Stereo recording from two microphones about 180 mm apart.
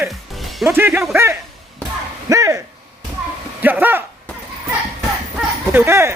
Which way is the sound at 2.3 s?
15° right (ahead or behind).